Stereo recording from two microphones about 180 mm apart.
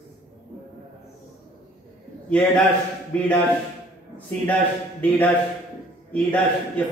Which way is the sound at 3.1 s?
10° left (ahead or behind).